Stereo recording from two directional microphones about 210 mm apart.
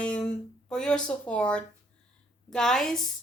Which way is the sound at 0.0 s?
5° left (ahead or behind).